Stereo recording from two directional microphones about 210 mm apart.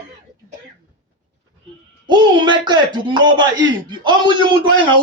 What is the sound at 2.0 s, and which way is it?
Speech, 20° right (ahead or behind).